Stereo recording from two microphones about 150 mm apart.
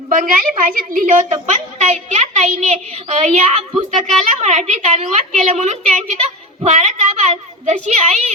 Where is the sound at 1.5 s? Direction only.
55° right (ahead or behind).